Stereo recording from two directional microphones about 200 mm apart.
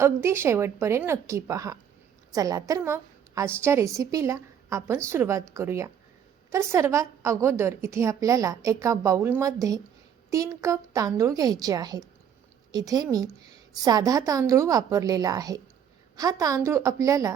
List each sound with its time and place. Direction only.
0.0 s a woman's voice: 15° right (ahead or behind)